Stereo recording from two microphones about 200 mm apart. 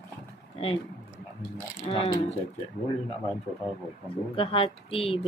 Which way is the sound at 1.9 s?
30° left (ahead or behind).